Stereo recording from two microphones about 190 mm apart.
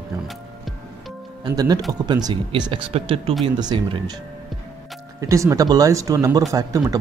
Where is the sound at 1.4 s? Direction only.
20° right (ahead or behind).